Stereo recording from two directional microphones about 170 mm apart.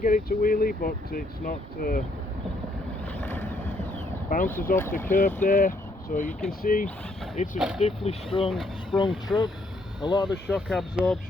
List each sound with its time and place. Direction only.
0.0 s speech: 55° left (ahead or behind)
3.2 s vehicle: 10° left (ahead or behind)
4.3 s speech: 50° left (ahead or behind); by 8.4 s 35° left (ahead or behind)
8.4 s speech: centre (ahead or behind)
9.0 s speech: 25° left (ahead or behind)
10.5 s speech: centre (ahead or behind)